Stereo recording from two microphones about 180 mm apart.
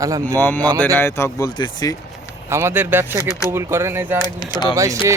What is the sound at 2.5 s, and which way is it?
Speech, 15° right (ahead or behind).